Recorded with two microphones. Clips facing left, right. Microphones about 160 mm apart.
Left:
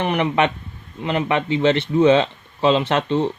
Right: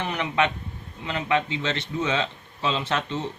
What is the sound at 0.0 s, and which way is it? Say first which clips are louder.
Speech: left 6 dB; 65° left (ahead or behind).